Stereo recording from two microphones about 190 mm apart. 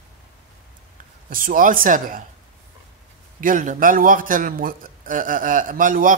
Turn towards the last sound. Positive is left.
turn(degrees=-45)  # may be behind; listen again after turning